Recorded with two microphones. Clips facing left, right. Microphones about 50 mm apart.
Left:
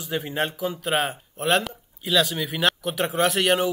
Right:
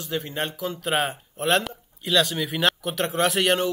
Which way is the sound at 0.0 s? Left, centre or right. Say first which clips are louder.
Left 2 dB; centre.